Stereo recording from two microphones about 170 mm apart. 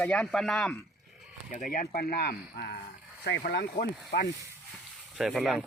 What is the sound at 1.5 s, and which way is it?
Speech, 55° left (ahead or behind).